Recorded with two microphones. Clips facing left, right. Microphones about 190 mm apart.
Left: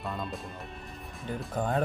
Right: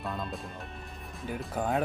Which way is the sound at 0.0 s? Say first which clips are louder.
Even; centre (ahead or behind).